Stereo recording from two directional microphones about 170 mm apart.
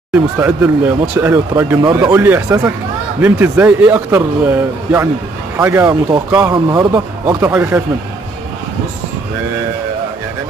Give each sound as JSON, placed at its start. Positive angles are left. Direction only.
{"t": 0.1, "sound": "a man's voice", "side_deg": -10}
{"t": 7.3, "sound": "a man's voice", "side_deg": -10}